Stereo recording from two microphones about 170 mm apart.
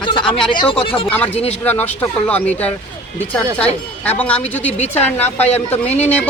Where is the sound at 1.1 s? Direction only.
10° left (ahead or behind).